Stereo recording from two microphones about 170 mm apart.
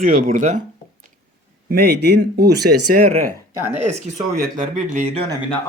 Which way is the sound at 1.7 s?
70° right (ahead or behind).